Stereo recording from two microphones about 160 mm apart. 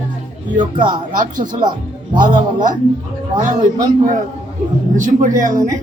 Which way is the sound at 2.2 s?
55° right (ahead or behind).